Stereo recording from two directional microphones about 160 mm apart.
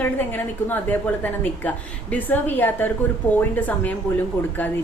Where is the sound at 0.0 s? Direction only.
10° left (ahead or behind).